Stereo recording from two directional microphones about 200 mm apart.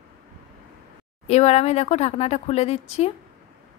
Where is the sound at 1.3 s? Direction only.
35° left (ahead or behind).